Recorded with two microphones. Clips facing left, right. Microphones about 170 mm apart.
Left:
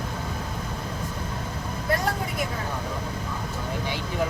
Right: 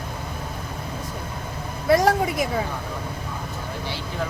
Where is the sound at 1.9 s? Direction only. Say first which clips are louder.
Right 9 dB; 90° right.